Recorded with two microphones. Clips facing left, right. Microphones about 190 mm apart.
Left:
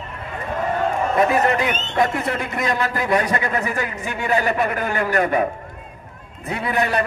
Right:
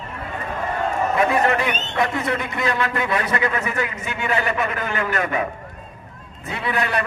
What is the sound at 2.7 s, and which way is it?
A man's voice, 35° left (ahead or behind).